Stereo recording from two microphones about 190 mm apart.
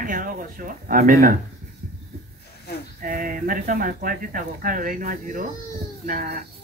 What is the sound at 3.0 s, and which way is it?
Speech, 45° right (ahead or behind).